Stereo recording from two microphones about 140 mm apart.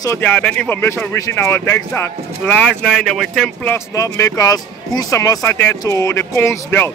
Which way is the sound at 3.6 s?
20° left (ahead or behind).